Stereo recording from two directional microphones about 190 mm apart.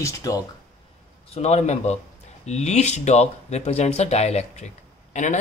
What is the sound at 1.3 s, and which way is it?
Speech, 35° left (ahead or behind).